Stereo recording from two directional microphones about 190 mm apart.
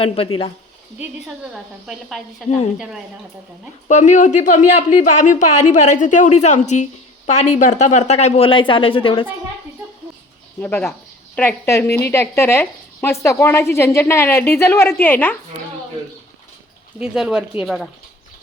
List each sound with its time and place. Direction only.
0.9 s a woman's voice: 5° right (ahead or behind)
3.8 s speech: 40° left (ahead or behind)
10.6 s a woman's voice: 10° left (ahead or behind)
17.0 s a woman's voice: 5° right (ahead or behind)